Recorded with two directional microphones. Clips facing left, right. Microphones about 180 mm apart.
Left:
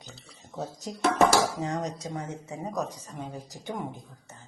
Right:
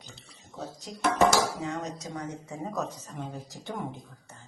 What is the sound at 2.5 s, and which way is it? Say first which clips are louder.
Speech: left 1 dB; 15° left (ahead or behind).